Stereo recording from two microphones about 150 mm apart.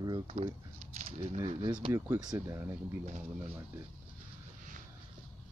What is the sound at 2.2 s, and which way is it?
Speech, 20° right (ahead or behind).